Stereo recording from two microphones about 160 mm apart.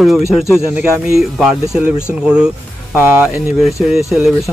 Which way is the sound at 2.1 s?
5° right (ahead or behind).